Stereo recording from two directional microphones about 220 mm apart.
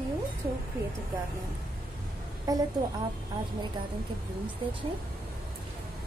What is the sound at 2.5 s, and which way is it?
Speech, 15° right (ahead or behind).